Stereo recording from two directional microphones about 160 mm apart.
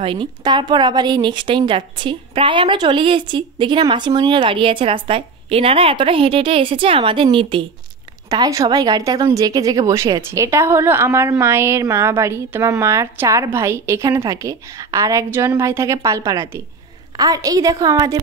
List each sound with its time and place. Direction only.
0.0 s a woman's voice: 30° right (ahead or behind)
8.3 s a woman's voice: 20° right (ahead or behind)